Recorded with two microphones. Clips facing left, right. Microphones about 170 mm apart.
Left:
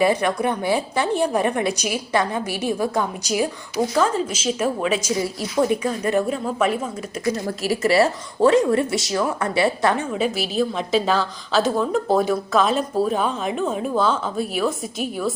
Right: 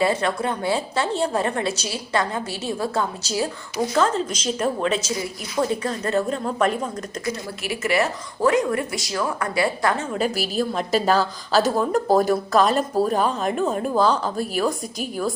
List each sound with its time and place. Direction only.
0.0 s a woman's voice: 15° left (ahead or behind)
7.4 s speech: 35° left (ahead or behind); by 10.1 s 20° left (ahead or behind)
10.2 s a woman's voice: centre (ahead or behind)